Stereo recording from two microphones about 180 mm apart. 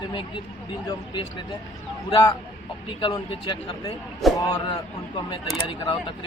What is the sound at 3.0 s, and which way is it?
A man's voice, 25° left (ahead or behind).